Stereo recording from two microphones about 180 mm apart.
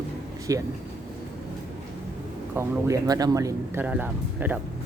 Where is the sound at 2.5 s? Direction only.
15° right (ahead or behind).